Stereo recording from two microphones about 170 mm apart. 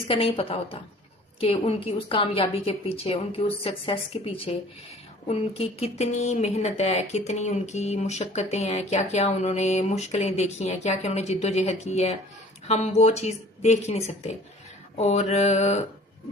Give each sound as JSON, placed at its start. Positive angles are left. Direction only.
{"t": 0.1, "sound": "speech", "side_deg": 35}